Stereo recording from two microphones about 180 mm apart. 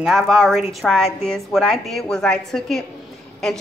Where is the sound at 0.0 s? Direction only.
Centre (ahead or behind).